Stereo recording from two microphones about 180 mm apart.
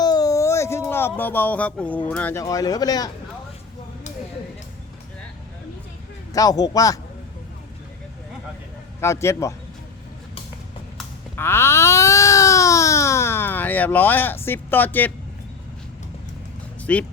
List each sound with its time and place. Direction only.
0.0 s a sound: 20° left (ahead or behind)
2.4 s speech: 20° left (ahead or behind)
6.3 s speech: 20° left (ahead or behind)
9.0 s a man's voice: 15° left (ahead or behind)
11.3 s baby cry: 15° left (ahead or behind)
16.8 s speech: 5° left (ahead or behind)